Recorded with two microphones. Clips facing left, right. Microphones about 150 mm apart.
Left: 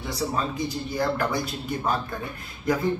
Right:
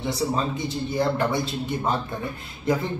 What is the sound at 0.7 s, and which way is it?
A man's voice, 25° right (ahead or behind).